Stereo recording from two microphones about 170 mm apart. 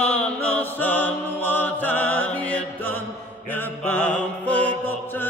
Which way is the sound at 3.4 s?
10° left (ahead or behind).